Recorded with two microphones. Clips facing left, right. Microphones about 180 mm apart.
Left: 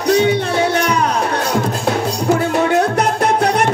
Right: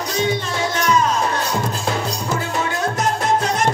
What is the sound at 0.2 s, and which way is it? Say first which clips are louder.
Music: left 6 dB; 65° left (ahead or behind).